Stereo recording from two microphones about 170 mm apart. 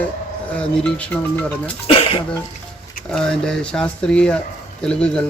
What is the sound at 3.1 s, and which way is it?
Speech, 5° left (ahead or behind).